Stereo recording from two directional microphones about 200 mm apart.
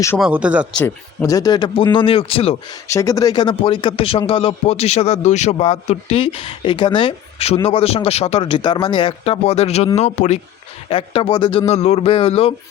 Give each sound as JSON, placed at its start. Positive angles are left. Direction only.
{"t": 0.2, "sound": "speech", "side_deg": -5}
{"t": 0.8, "sound": "speech", "side_deg": 10}
{"t": 2.8, "sound": "speech", "side_deg": 15}